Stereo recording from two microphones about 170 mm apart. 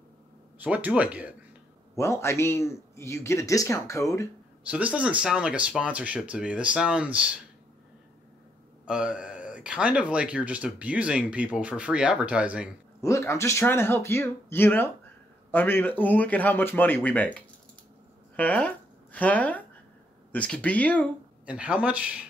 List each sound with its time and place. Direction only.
0.6 s speech: 10° right (ahead or behind)
2.0 s a man's voice: 15° left (ahead or behind)
4.6 s speech: 10° right (ahead or behind)
8.8 s speech: 5° right (ahead or behind)
13.0 s a man's voice: 15° left (ahead or behind)
21.5 s speech: 5° right (ahead or behind)